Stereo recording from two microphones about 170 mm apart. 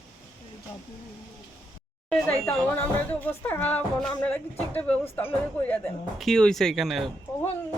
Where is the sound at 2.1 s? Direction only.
5° left (ahead or behind).